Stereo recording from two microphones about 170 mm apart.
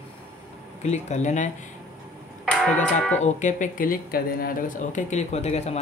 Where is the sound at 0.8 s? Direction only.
40° left (ahead or behind).